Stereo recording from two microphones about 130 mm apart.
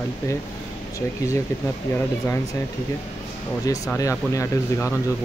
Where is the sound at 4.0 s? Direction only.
25° left (ahead or behind).